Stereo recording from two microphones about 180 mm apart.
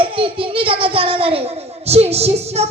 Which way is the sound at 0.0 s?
30° right (ahead or behind).